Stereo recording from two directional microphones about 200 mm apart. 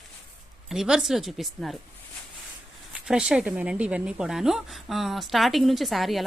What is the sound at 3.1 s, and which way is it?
A woman's voice, 5° right (ahead or behind).